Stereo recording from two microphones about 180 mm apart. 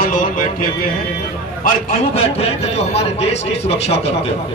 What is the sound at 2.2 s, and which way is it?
Speech, 35° left (ahead or behind).